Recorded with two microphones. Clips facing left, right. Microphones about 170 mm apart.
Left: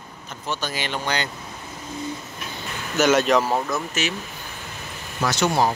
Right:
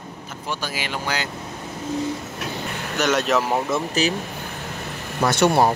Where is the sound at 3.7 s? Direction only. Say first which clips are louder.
Right 4 dB; 35° right (ahead or behind).